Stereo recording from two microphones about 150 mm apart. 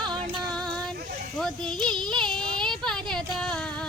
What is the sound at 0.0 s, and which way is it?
Music, 30° right (ahead or behind).